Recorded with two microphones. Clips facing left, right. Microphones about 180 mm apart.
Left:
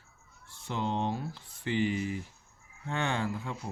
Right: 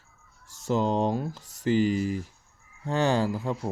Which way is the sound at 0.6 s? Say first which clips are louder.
Right 7 dB; 40° right (ahead or behind).